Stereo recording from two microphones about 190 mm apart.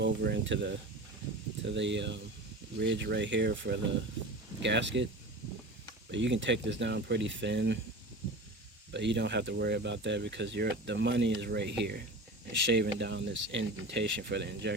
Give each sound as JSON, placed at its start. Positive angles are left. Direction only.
{"t": 0.0, "sound": "speech", "side_deg": -65}
{"t": 6.1, "sound": "speech", "side_deg": -70}
{"t": 8.9, "sound": "speech", "side_deg": -65}